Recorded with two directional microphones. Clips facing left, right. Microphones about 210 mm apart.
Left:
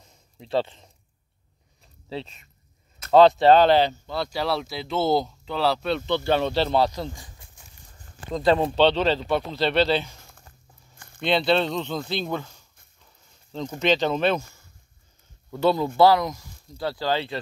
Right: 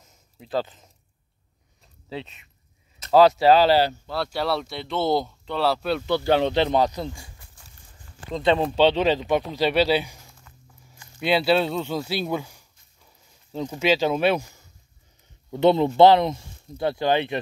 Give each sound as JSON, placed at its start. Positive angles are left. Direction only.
{"t": 0.1, "sound": "a sound", "side_deg": 0}
{"t": 2.0, "sound": "speech", "side_deg": 0}
{"t": 8.3, "sound": "speech", "side_deg": 0}
{"t": 8.7, "sound": "speech", "side_deg": -10}
{"t": 10.5, "sound": "a sound", "side_deg": 40}
{"t": 11.1, "sound": "speech", "side_deg": -5}